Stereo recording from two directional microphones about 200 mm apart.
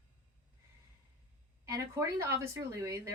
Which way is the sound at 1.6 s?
15° right (ahead or behind).